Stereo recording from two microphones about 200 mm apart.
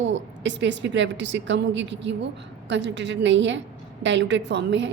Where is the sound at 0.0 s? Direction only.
65° right (ahead or behind).